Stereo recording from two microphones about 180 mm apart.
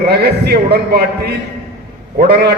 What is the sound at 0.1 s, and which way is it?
A man's voice, 60° right (ahead or behind).